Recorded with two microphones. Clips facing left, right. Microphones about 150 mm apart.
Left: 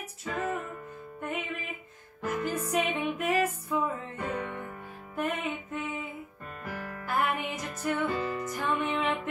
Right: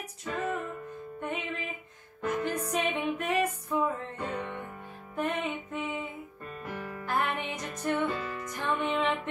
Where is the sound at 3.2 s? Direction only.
5° left (ahead or behind).